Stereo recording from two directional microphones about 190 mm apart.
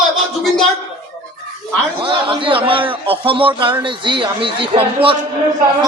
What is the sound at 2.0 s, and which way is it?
A man's voice, 25° right (ahead or behind).